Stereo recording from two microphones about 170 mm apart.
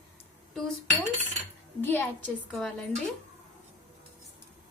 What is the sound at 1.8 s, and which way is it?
A woman's voice, 10° left (ahead or behind).